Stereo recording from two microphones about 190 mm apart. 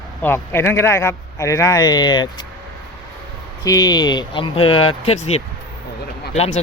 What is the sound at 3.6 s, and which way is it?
Speech, 20° left (ahead or behind).